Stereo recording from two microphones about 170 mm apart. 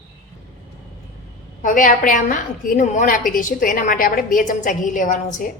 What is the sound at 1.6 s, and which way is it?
A woman's voice, 50° left (ahead or behind).